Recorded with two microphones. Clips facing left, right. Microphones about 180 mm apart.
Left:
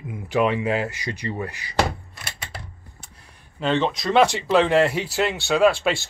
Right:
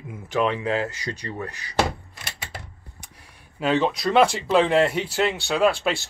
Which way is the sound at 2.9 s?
15° right (ahead or behind).